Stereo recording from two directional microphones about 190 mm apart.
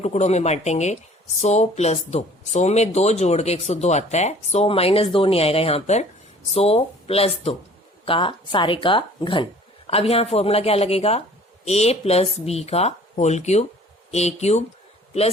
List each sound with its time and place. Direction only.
0.0 s speech: 35° left (ahead or behind)